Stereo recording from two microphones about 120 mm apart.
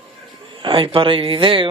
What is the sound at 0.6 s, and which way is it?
Speech, 45° right (ahead or behind).